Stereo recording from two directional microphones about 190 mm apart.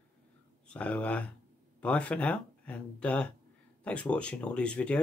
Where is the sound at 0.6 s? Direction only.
5° left (ahead or behind).